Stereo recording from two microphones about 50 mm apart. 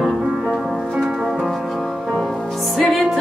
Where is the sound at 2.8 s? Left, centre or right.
Centre.